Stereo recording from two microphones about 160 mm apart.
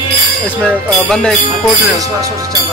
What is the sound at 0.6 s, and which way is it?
Speech, 5° left (ahead or behind).